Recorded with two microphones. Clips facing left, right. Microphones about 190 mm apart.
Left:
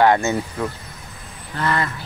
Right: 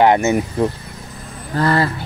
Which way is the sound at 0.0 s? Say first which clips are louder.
Right 3 dB; 20° right (ahead or behind).